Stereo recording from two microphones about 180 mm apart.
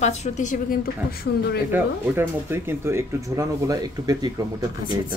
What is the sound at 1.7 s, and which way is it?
Speech, 10° right (ahead or behind).